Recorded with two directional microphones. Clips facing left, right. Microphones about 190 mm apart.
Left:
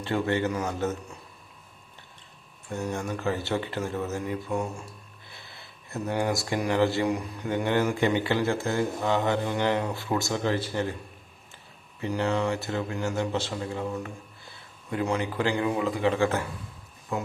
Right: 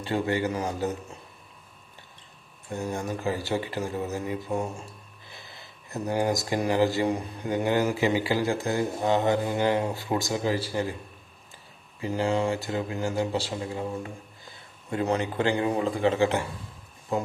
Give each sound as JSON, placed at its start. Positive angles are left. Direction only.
{"t": 0.0, "sound": "speech", "side_deg": -15}
{"t": 2.6, "sound": "speech", "side_deg": -15}
{"t": 5.3, "sound": "a sound", "side_deg": -20}
{"t": 6.1, "sound": "a man's voice", "side_deg": -30}
{"t": 6.7, "sound": "speech", "side_deg": -15}
{"t": 7.0, "sound": "speech", "side_deg": -30}
{"t": 7.4, "sound": "speech", "side_deg": -15}
{"t": 12.1, "sound": "a man's voice", "side_deg": -25}
{"t": 12.5, "sound": "a man's voice", "side_deg": -15}
{"t": 17.1, "sound": "speech", "side_deg": -35}